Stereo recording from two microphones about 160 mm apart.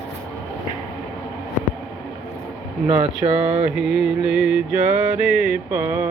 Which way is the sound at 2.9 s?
40° right (ahead or behind).